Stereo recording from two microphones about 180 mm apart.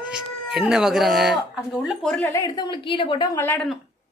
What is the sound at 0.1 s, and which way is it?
Speech, 5° right (ahead or behind).